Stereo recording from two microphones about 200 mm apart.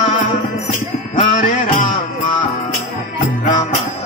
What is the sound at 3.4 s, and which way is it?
Music, 40° left (ahead or behind).